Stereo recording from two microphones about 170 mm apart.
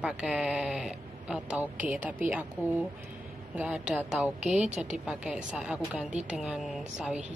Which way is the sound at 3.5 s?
5° right (ahead or behind).